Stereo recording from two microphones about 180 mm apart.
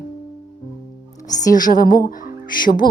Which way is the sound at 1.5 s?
50° left (ahead or behind).